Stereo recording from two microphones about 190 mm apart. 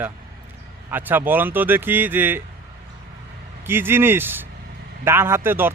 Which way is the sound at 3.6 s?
10° right (ahead or behind).